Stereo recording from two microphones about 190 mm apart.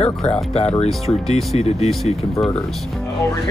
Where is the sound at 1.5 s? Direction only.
35° left (ahead or behind).